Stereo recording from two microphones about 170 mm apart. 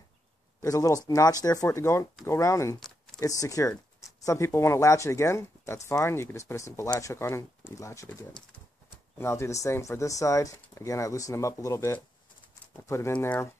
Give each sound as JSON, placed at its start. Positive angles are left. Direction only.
{"t": 0.6, "sound": "speech", "side_deg": 20}